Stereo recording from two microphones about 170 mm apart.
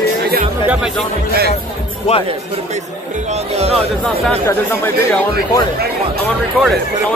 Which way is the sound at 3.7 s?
5° left (ahead or behind).